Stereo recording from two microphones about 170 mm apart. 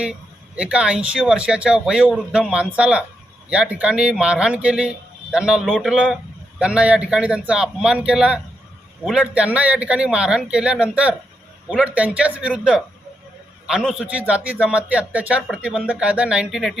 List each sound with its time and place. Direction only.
0.0 s a man's voice: 5° right (ahead or behind)